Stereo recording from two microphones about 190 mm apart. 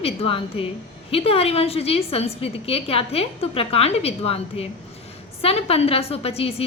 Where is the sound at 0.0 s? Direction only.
30° left (ahead or behind).